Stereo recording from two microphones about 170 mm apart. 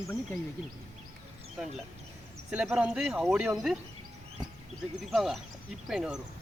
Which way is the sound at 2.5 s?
5° right (ahead or behind).